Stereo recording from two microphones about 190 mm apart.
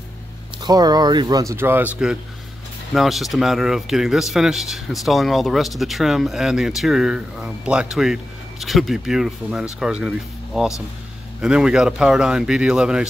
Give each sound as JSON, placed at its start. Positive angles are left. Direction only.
{"t": 0.7, "sound": "speech", "side_deg": -20}